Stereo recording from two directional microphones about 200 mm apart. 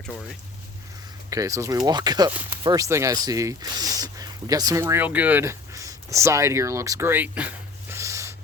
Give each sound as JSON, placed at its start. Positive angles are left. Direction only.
{"t": 1.3, "sound": "speech", "side_deg": -15}